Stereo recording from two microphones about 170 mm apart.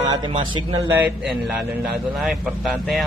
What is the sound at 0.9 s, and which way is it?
A man's voice, 10° right (ahead or behind).